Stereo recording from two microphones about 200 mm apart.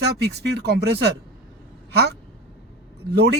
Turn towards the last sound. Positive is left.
turn(degrees=-55)  # may be behind; listen again after turning